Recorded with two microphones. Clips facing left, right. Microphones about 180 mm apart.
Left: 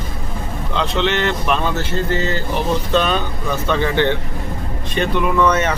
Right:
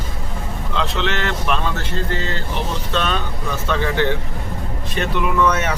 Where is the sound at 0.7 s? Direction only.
Centre (ahead or behind).